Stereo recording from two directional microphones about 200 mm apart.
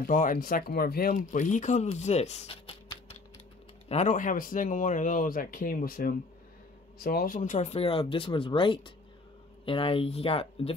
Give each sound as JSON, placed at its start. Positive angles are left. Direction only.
{"t": 0.1, "sound": "speech", "side_deg": 45}